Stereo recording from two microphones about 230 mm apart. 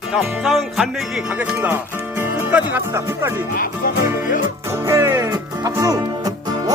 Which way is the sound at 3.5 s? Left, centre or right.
Left.